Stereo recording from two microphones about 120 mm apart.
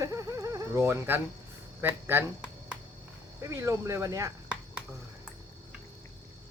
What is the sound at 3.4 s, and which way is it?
Speech, 25° right (ahead or behind).